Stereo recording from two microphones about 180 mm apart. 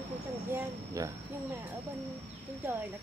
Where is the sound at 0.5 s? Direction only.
15° right (ahead or behind).